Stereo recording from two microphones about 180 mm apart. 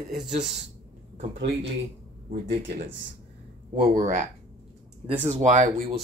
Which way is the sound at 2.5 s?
65° right (ahead or behind).